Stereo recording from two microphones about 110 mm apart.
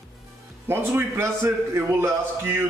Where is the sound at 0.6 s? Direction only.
20° right (ahead or behind).